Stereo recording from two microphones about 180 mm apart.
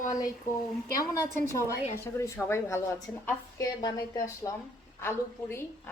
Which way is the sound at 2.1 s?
15° left (ahead or behind).